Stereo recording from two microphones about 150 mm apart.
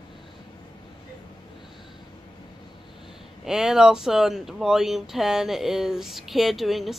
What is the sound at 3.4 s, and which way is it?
Speech, 5° right (ahead or behind).